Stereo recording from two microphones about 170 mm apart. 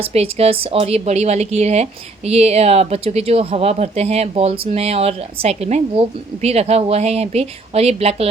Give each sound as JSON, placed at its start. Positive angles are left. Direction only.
{"t": 0.0, "sound": "speech", "side_deg": -35}